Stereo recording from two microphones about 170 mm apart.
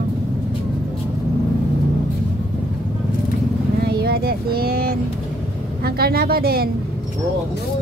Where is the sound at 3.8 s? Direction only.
65° right (ahead or behind).